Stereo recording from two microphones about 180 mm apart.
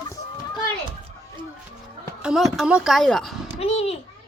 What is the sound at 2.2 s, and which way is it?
A woman's voice, centre (ahead or behind).